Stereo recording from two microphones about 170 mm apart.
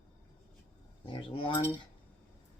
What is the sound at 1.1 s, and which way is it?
Speech, 30° left (ahead or behind).